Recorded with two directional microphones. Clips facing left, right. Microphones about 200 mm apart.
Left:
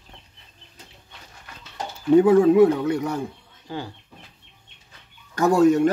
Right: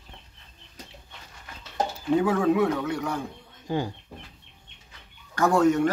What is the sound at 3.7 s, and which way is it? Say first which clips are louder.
Speech: right 4 dB; 15° right (ahead or behind).